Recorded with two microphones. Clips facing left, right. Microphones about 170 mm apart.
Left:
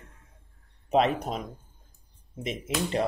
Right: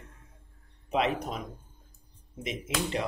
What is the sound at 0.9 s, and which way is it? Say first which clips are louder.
Speech: left 4 dB; 35° left (ahead or behind).